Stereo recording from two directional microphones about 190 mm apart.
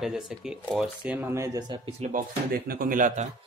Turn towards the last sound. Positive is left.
turn(degrees=-45)  # may be behind; listen again after turning